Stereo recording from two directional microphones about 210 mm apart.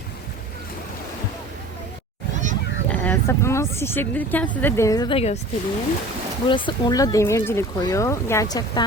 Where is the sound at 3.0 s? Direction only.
10° left (ahead or behind); by 5.4 s 30° left (ahead or behind).